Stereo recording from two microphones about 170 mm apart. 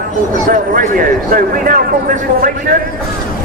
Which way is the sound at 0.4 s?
55° right (ahead or behind).